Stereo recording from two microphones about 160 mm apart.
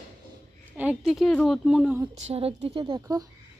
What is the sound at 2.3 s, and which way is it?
Speech, 35° right (ahead or behind).